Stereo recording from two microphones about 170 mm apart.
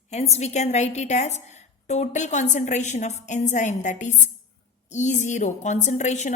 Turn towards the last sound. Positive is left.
turn(degrees=45)  # may be behind; listen again after turning